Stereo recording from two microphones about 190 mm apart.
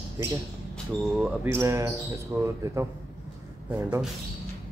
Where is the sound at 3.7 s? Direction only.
10° right (ahead or behind).